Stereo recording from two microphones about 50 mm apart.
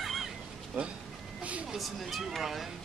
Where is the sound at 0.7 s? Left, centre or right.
Right.